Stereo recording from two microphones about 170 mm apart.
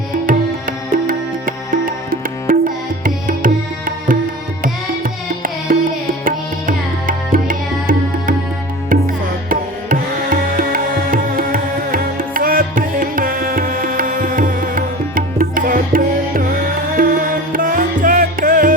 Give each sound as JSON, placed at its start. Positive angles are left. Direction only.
{"t": 1.0, "sound": "music", "side_deg": -55}